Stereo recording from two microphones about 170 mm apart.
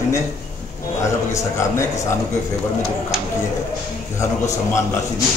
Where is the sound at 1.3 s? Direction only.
15° left (ahead or behind).